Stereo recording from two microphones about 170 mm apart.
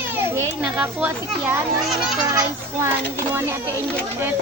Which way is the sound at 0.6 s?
10° right (ahead or behind).